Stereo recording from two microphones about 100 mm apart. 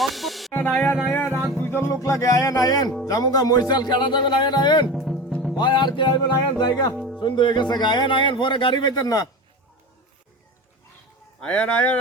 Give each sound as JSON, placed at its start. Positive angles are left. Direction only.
{"t": 0.0, "sound": "music", "side_deg": 0}
{"t": 0.5, "sound": "music", "side_deg": 15}
{"t": 3.1, "sound": "speech", "side_deg": 40}
{"t": 4.9, "sound": "music", "side_deg": 0}
{"t": 5.5, "sound": "speech", "side_deg": 45}
{"t": 6.9, "sound": "music", "side_deg": -5}
{"t": 7.2, "sound": "speech", "side_deg": 50}
{"t": 11.3, "sound": "speech", "side_deg": 10}